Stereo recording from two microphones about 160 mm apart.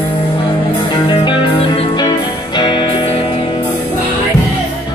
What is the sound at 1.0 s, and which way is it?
Music, 30° left (ahead or behind).